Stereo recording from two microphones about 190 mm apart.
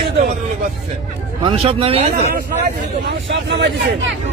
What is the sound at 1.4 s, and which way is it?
Speech, 25° right (ahead or behind).